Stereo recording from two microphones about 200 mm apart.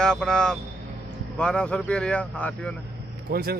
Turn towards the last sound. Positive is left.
turn(degrees=-50)  # may be behind; listen again after turning